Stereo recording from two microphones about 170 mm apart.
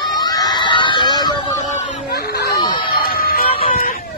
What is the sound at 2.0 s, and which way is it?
Speech, 65° left (ahead or behind).